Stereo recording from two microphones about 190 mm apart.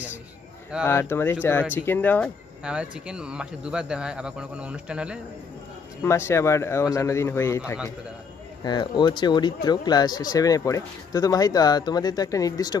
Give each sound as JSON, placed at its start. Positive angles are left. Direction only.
{"t": 0.8, "sound": "a man's voice", "side_deg": 10}
{"t": 2.6, "sound": "speech", "side_deg": -5}
{"t": 6.0, "sound": "a man's voice", "side_deg": 15}